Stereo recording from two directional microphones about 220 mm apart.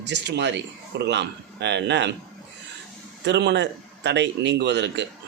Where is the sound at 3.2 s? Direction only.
50° right (ahead or behind).